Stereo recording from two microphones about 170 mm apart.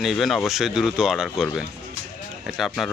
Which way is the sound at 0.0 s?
Centre (ahead or behind).